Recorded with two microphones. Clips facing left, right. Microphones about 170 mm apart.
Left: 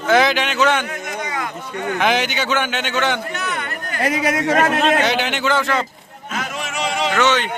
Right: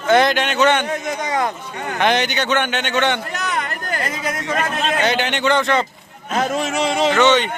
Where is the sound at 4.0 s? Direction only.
70° left (ahead or behind).